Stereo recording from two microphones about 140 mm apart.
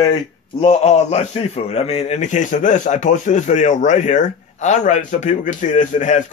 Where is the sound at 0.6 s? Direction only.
50° left (ahead or behind).